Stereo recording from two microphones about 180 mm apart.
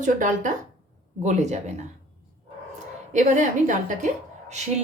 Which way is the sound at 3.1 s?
45° right (ahead or behind).